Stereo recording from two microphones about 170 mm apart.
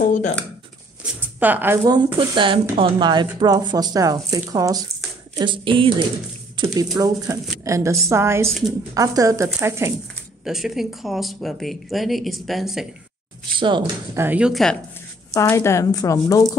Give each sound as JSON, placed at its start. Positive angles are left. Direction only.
{"t": 0.0, "sound": "a sound", "side_deg": 45}
{"t": 1.0, "sound": "a woman's voice", "side_deg": -10}
{"t": 2.1, "sound": "a woman's voice", "side_deg": -30}
{"t": 10.4, "sound": "speech", "side_deg": 0}
{"t": 13.6, "sound": "speech", "side_deg": -30}
{"t": 14.1, "sound": "speech", "side_deg": -10}
{"t": 15.3, "sound": "speech", "side_deg": 15}